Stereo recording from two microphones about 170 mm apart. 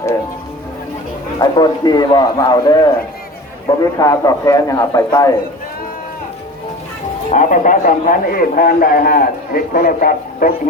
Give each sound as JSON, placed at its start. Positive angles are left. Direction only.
{"t": 1.4, "sound": "speech", "side_deg": 25}
{"t": 3.9, "sound": "speech", "side_deg": 20}
{"t": 7.3, "sound": "a man's voice", "side_deg": 50}